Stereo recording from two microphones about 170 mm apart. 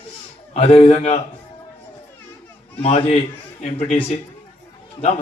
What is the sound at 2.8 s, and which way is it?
A man's voice, 35° left (ahead or behind).